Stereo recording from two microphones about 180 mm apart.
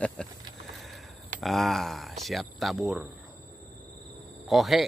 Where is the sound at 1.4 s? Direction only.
Centre (ahead or behind).